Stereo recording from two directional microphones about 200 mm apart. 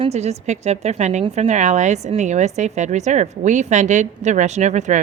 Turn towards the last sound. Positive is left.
turn(degrees=-35)  # may be behind; listen again after turning